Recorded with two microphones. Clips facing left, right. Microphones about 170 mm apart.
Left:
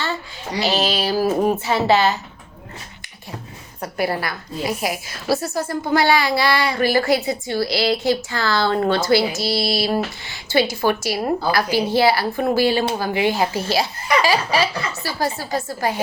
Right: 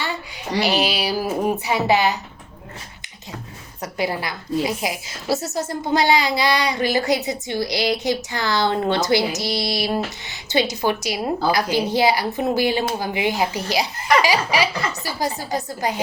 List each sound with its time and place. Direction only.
0.6 s a sound: 15° right (ahead or behind)
1.5 s speech: 15° right (ahead or behind)
3.9 s a child's voice: 20° right (ahead or behind)